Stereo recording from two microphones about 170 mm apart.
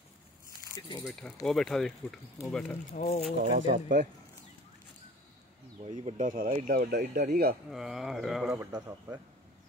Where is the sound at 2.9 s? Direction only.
40° left (ahead or behind).